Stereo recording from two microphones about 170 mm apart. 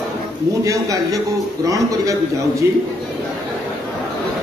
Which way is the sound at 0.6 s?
20° right (ahead or behind).